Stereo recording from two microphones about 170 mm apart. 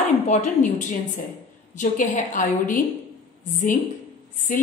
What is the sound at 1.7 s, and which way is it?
A woman's voice, 50° left (ahead or behind).